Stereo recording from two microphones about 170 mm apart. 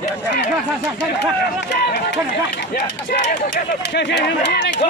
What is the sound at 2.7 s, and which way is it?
Speech, 75° left (ahead or behind).